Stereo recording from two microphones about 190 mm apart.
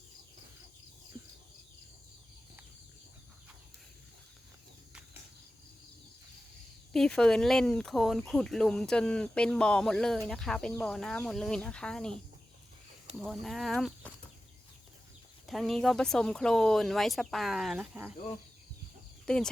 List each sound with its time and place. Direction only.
6.9 s speech: 5° left (ahead or behind)
13.1 s speech: centre (ahead or behind)
15.4 s speech: centre (ahead or behind)
19.2 s speech: 5° left (ahead or behind)